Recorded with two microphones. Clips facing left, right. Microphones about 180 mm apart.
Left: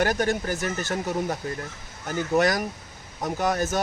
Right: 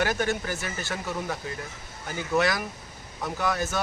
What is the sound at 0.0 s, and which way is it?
Speech, 40° left (ahead or behind).